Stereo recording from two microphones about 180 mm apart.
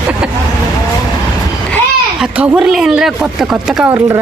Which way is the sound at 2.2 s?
5° right (ahead or behind).